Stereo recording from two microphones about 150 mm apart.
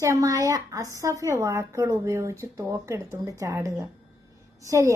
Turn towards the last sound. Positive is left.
turn(degrees=-20)  # may be behind; listen again after turning